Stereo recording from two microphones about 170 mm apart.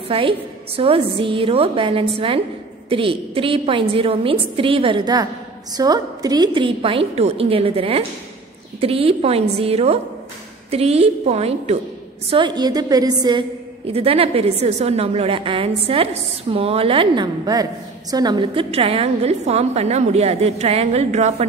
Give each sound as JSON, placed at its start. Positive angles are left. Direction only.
{"t": 0.1, "sound": "a woman's voice", "side_deg": -30}
{"t": 12.3, "sound": "a woman's voice", "side_deg": -30}
{"t": 13.9, "sound": "a woman's voice", "side_deg": -35}